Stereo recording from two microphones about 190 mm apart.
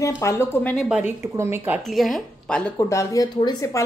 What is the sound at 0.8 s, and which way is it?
Speech, 5° right (ahead or behind).